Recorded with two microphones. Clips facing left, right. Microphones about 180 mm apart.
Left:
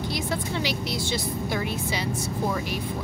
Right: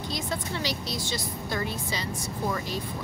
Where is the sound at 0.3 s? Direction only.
15° left (ahead or behind).